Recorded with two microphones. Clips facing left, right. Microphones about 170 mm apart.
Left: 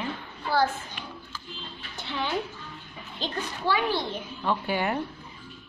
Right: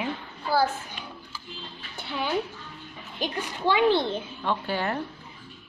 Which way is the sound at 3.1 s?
15° right (ahead or behind).